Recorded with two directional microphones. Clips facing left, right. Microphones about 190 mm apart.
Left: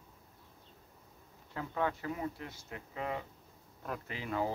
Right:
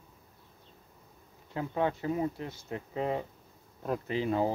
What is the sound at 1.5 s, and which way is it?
Speech, 25° right (ahead or behind).